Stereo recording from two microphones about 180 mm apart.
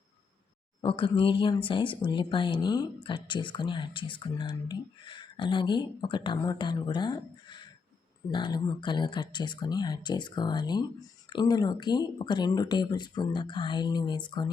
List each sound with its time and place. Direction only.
0.8 s speech: 30° left (ahead or behind)